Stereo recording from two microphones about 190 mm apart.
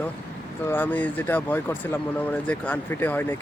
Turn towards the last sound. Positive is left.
turn(degrees=10)  # may be behind; listen again after turning